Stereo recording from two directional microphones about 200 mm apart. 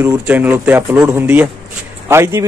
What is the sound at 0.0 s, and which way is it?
A man's voice, 10° right (ahead or behind).